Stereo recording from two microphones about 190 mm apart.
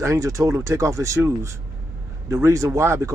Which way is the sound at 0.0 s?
15° right (ahead or behind).